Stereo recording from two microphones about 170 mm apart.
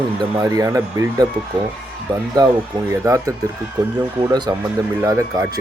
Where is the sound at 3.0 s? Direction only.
20° right (ahead or behind).